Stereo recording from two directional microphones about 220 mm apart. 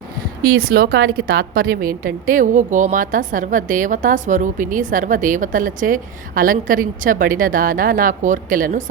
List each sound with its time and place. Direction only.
0.4 s a woman's voice: 40° right (ahead or behind)